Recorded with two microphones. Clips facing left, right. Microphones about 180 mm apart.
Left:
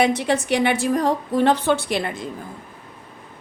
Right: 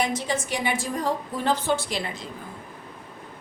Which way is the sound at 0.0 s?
65° left (ahead or behind).